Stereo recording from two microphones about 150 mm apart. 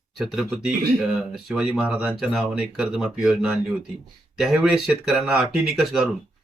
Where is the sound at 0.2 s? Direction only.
5° right (ahead or behind).